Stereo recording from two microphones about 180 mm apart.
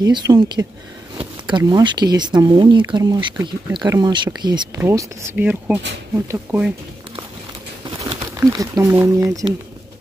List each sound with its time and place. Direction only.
0.0 s speech: 20° right (ahead or behind)
7.8 s crumpling: 20° right (ahead or behind)